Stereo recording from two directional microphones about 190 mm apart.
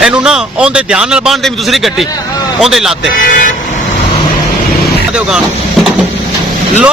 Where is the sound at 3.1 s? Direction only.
45° left (ahead or behind).